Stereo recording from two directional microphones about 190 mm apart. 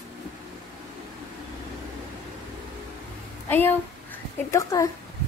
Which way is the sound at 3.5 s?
10° left (ahead or behind).